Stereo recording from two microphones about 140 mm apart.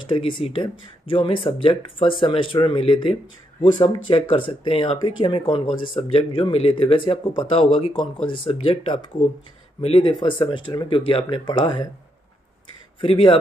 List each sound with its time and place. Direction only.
0.1 s speech: 40° left (ahead or behind)
10.4 s speech: 30° left (ahead or behind)
13.0 s speech: 40° left (ahead or behind)